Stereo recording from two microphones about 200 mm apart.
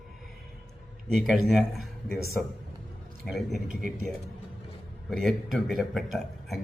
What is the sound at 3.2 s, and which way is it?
Speech, centre (ahead or behind).